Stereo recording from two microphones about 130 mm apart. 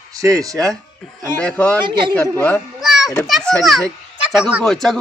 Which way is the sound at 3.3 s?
Centre (ahead or behind).